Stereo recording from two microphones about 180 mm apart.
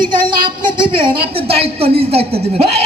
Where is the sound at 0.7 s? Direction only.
30° right (ahead or behind).